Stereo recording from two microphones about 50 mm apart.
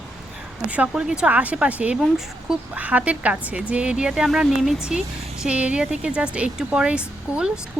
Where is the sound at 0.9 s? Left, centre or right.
Centre.